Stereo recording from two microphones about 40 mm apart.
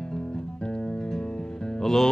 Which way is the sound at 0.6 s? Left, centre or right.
Left.